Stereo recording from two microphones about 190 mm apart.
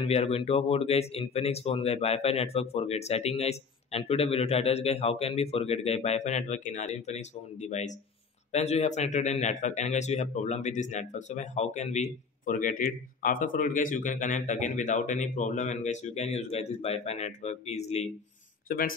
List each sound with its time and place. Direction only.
0.0 s a man's voice: 35° left (ahead or behind)
18.7 s speech: 50° left (ahead or behind)